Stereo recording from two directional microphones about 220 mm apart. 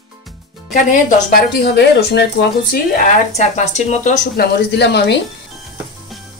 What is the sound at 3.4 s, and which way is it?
Speech, 35° left (ahead or behind).